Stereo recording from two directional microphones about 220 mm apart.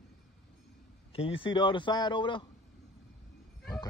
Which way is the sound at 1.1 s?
25° left (ahead or behind).